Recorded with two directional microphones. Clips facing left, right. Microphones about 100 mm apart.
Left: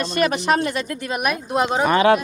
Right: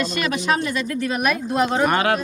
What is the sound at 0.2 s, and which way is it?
Speech, 40° left (ahead or behind).